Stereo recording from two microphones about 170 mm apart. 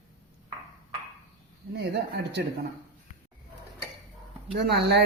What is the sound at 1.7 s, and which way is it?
Speech, 80° right.